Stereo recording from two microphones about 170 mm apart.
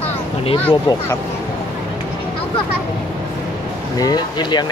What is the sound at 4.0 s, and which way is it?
Speech, 25° left (ahead or behind).